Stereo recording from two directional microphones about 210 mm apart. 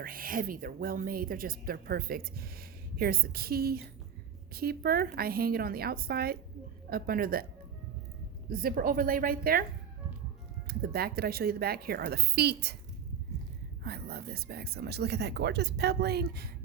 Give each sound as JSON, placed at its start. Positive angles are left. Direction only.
{"t": 0.0, "sound": "speech", "side_deg": -45}
{"t": 8.4, "sound": "speech", "side_deg": -45}
{"t": 10.7, "sound": "speech", "side_deg": -45}
{"t": 13.8, "sound": "speech", "side_deg": -50}